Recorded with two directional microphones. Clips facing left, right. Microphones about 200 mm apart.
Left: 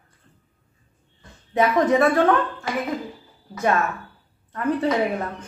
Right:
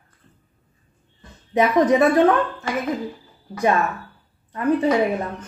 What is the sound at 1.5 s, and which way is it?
Speech, 15° right (ahead or behind).